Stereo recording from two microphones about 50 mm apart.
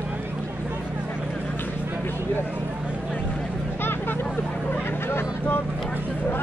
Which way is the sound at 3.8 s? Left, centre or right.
Left.